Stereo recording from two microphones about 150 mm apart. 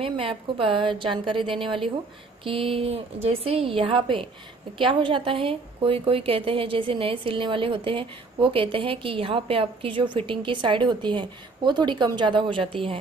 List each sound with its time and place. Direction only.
0.0 s a woman's voice: 35° right (ahead or behind)